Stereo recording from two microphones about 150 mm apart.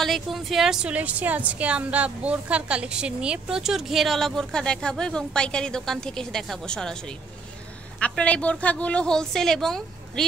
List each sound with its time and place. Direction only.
0.0 s a woman's voice: centre (ahead or behind)